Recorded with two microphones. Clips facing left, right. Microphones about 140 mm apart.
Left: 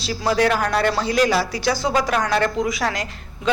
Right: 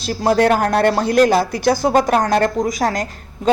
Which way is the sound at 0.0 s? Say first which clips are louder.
Right 4 dB; 50° right (ahead or behind).